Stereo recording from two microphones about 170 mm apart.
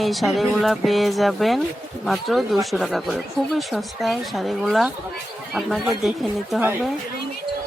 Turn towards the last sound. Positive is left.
turn(degrees=0)  # may be behind; listen again after turning